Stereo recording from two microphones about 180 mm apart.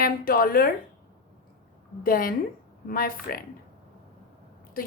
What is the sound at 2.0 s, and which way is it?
A woman's voice, 50° left (ahead or behind).